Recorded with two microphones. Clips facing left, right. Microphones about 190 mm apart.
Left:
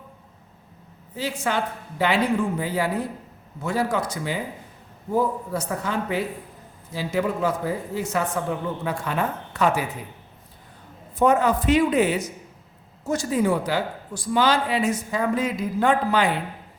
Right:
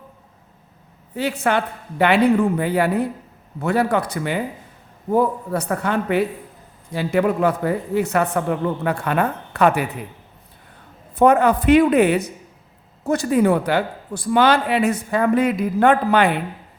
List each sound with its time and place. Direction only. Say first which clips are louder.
1.1 s speech: right 5 dB; 60° right (ahead or behind)
11.2 s speech: right 4 dB; 60° right (ahead or behind)